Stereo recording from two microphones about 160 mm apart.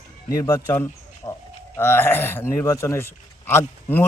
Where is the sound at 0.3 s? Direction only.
20° left (ahead or behind).